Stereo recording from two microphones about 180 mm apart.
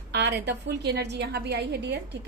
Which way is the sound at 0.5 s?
65° right (ahead or behind).